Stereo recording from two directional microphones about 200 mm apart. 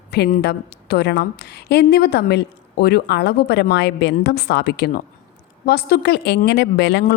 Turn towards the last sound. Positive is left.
turn(degrees=55)  # may be behind; listen again after turning